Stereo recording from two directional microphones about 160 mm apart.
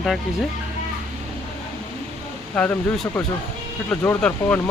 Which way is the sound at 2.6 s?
10° left (ahead or behind).